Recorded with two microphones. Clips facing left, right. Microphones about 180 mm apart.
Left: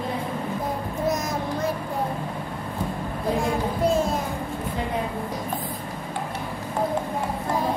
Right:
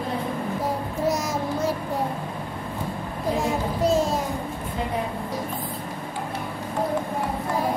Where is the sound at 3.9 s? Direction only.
35° right (ahead or behind).